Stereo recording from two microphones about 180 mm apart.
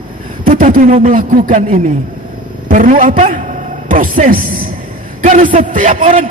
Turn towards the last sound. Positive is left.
turn(degrees=-45)  # may be behind; listen again after turning